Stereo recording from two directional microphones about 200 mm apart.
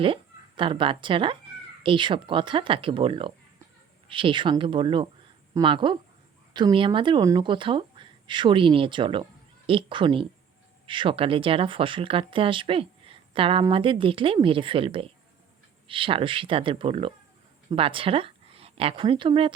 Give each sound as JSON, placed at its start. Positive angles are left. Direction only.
{"t": 0.0, "sound": "a woman's voice", "side_deg": -25}